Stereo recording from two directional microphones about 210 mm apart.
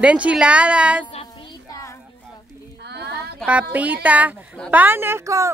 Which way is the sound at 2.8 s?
50° right (ahead or behind).